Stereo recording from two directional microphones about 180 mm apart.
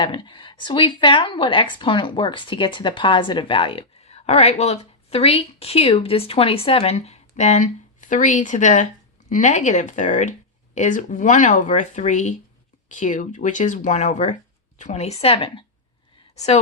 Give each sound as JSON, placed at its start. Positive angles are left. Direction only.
{"t": 0.0, "sound": "speech", "side_deg": 25}